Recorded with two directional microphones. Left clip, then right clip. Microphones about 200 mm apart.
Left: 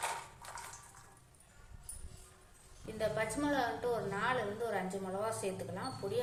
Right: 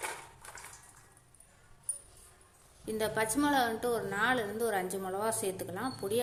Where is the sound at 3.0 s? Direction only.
55° right (ahead or behind).